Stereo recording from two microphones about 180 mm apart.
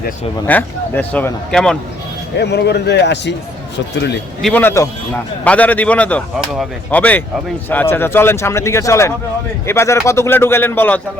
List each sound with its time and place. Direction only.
0.4 s a man's voice: 10° left (ahead or behind)
2.4 s a man's voice: 70° left (ahead or behind)
4.4 s a man's voice: 5° left (ahead or behind)